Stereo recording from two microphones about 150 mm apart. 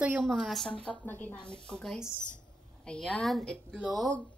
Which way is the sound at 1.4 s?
30° left (ahead or behind).